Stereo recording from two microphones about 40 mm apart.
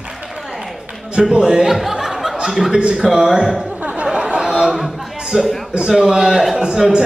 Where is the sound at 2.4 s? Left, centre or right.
Centre.